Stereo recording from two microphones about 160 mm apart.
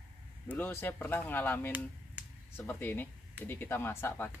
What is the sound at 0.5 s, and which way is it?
Speech, 10° left (ahead or behind).